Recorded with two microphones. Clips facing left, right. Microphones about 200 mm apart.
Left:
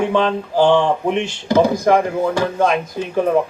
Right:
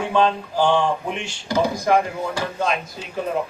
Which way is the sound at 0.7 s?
60° left (ahead or behind).